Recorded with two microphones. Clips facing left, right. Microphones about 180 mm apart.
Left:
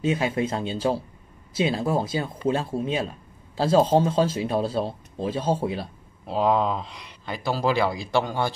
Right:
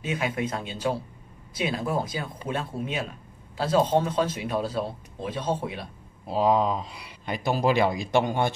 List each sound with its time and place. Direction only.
0.0 s speech: 30° left (ahead or behind)
6.2 s speech: 5° right (ahead or behind)
7.2 s a man's voice: 20° right (ahead or behind)